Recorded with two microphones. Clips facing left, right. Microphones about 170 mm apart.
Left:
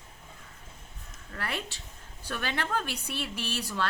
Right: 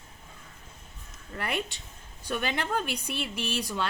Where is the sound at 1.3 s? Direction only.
15° right (ahead or behind).